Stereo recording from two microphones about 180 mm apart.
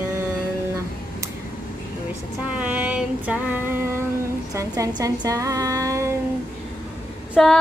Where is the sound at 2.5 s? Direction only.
10° right (ahead or behind).